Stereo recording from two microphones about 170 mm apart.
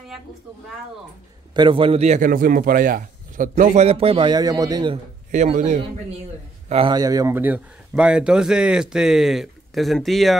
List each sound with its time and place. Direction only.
1.5 s speech: 30° right (ahead or behind); by 3.8 s 50° right (ahead or behind)
3.8 s a man's voice: 35° right (ahead or behind)
5.3 s speech: 45° right (ahead or behind)
6.7 s speech: 30° right (ahead or behind); by 10.3 s centre (ahead or behind)